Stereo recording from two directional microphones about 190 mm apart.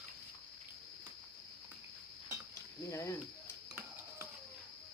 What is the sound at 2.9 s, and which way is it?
Speech, 15° left (ahead or behind).